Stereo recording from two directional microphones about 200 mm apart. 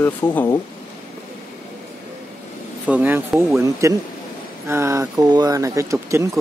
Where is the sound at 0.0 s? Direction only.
10° left (ahead or behind).